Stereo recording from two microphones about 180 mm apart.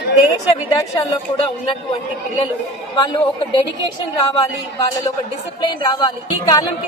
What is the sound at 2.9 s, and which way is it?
Speech, 25° left (ahead or behind).